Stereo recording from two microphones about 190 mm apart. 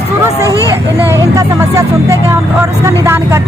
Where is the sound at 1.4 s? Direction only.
15° right (ahead or behind).